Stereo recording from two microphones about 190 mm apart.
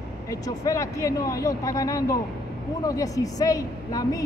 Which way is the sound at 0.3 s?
15° left (ahead or behind).